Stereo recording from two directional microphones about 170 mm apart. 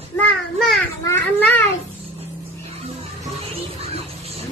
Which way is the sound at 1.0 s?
15° left (ahead or behind).